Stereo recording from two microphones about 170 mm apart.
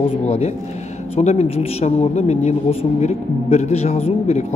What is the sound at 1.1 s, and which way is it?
Speech, 40° left (ahead or behind).